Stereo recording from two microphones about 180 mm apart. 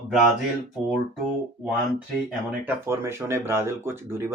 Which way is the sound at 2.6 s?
15° right (ahead or behind).